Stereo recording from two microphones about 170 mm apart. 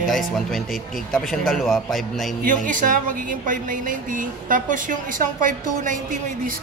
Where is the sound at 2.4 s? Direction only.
50° right (ahead or behind).